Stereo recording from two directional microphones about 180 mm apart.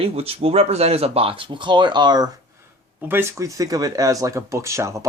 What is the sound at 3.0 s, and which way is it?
Speech, 10° right (ahead or behind).